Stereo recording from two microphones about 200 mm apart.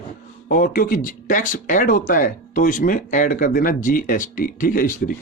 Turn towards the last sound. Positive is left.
turn(degrees=45)  # may be behind; listen again after turning